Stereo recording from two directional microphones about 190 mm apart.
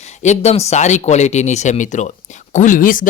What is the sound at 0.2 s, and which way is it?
Speech, 35° left (ahead or behind).